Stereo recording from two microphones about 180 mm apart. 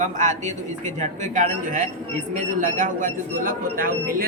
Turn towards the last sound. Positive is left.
turn(degrees=-50)  # may be behind; listen again after turning